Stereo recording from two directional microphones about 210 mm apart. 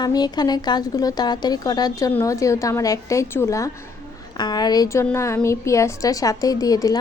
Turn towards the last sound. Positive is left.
turn(degrees=15)  # may be behind; listen again after turning